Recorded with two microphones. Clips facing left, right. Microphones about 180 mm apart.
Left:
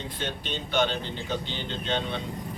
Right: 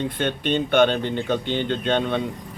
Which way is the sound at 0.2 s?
60° right (ahead or behind).